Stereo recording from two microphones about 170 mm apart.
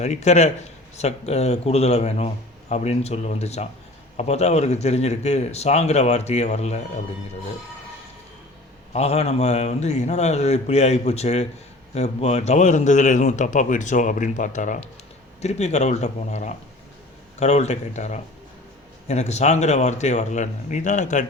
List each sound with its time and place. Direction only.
0.0 s speech: 40° left (ahead or behind)
8.9 s a man's voice: 40° left (ahead or behind)